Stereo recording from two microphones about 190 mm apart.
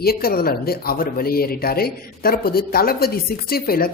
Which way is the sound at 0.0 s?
55° left (ahead or behind).